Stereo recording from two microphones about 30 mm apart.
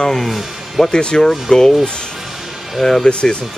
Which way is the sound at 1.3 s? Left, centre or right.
Centre.